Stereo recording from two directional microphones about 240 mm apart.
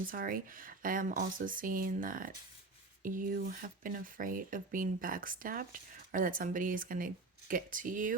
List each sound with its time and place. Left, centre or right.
0.0 s speech: right